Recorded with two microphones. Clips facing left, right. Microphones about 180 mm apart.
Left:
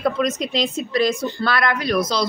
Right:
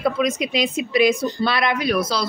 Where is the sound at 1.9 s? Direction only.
5° right (ahead or behind).